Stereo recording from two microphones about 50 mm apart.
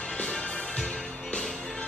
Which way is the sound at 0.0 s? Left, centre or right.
Centre.